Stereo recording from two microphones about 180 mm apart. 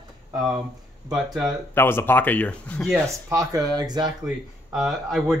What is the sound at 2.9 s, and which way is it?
Speech, 15° right (ahead or behind).